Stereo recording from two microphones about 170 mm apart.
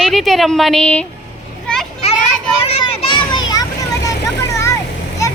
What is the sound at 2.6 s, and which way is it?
Children playing, 35° left (ahead or behind).